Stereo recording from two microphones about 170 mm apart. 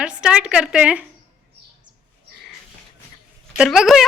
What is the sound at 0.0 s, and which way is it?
A woman's voice, 5° right (ahead or behind).